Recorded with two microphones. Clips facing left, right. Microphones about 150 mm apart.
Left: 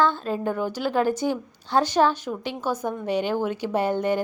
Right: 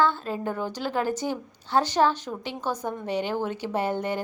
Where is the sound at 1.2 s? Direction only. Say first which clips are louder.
Left 4 dB; 20° right (ahead or behind).